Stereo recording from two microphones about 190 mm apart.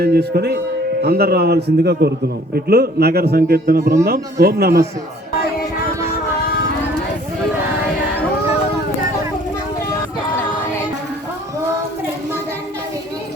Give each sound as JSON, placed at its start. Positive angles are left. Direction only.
{"t": 0.0, "sound": "a man's voice", "side_deg": -55}